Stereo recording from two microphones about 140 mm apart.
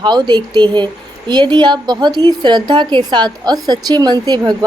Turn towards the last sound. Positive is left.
turn(degrees=-30)  # may be behind; listen again after turning